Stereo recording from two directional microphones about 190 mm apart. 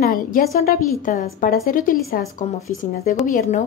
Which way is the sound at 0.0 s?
50° left (ahead or behind).